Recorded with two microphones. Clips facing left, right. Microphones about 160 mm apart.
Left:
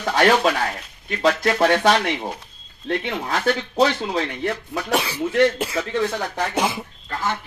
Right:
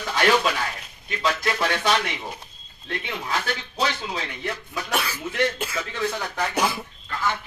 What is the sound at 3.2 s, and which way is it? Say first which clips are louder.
Speech: left 6 dB; 50° left (ahead or behind).